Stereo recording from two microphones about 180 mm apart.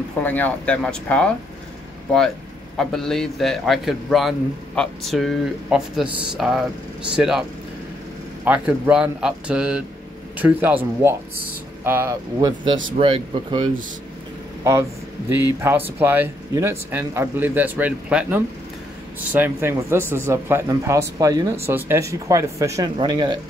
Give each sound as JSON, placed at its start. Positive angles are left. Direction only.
{"t": 0.2, "sound": "speech", "side_deg": 10}
{"t": 2.8, "sound": "a man's voice", "side_deg": 0}
{"t": 8.5, "sound": "a man's voice", "side_deg": -5}
{"t": 14.6, "sound": "speech", "side_deg": -15}